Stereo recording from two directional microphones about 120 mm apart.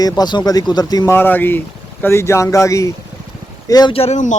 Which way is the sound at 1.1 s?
15° left (ahead or behind).